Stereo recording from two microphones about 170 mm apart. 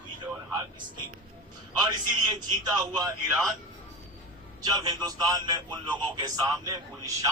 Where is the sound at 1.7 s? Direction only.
25° right (ahead or behind).